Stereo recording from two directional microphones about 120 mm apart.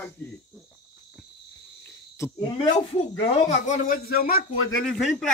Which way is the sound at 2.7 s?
65° left (ahead or behind).